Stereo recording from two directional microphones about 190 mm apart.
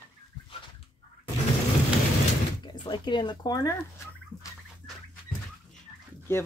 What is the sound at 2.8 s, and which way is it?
Speech, 25° left (ahead or behind).